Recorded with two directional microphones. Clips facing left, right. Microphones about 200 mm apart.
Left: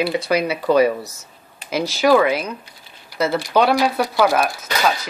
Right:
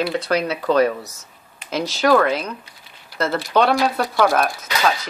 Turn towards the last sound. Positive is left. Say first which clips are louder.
# even
turn(degrees=5)  # may be behind; listen again after turning